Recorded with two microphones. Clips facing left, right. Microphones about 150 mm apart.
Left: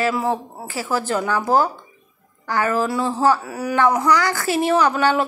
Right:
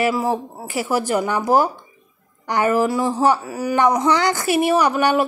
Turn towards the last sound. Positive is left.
turn(degrees=-10)  # may be behind; listen again after turning